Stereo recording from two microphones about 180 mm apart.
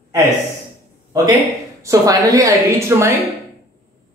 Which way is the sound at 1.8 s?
20° right (ahead or behind).